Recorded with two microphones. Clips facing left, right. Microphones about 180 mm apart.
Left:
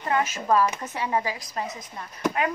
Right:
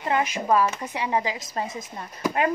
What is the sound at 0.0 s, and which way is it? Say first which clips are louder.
A woman's voice: right 1 dB; 15° right (ahead or behind).